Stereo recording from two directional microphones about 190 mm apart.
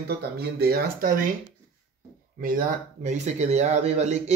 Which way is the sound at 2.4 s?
45° right (ahead or behind).